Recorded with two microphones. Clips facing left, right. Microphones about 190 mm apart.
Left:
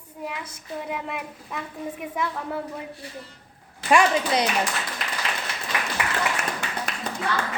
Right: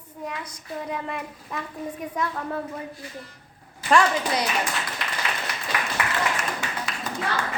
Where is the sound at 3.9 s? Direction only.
15° left (ahead or behind).